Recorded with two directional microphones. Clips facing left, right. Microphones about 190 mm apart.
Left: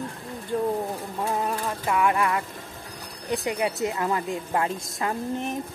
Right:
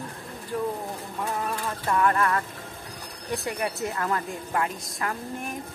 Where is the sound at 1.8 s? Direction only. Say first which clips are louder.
Even; 10° left (ahead or behind).